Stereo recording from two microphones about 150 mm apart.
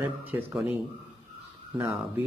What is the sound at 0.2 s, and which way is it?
Speech, 15° right (ahead or behind).